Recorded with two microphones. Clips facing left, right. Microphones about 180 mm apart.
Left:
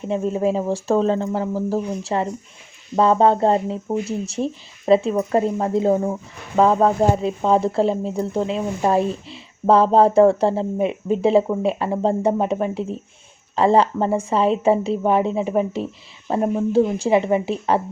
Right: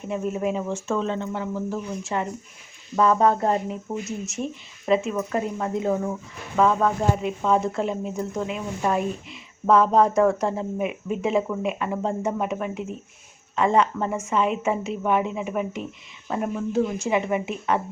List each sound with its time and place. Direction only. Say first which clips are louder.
0.1 s speech: left 5 dB; 30° left (ahead or behind)